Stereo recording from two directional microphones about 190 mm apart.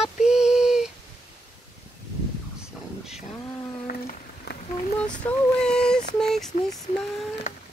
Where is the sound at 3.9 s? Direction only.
50° left (ahead or behind).